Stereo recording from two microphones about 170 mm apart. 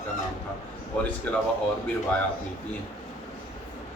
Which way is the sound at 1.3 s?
10° left (ahead or behind).